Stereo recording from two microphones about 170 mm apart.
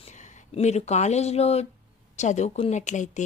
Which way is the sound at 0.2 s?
40° left (ahead or behind).